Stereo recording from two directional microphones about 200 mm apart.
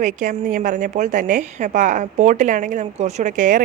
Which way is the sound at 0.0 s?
40° right (ahead or behind).